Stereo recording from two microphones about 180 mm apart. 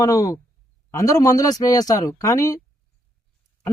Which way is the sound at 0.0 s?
20° left (ahead or behind).